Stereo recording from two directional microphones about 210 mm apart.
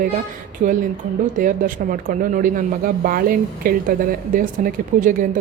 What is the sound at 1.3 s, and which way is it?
Speech, 40° right (ahead or behind).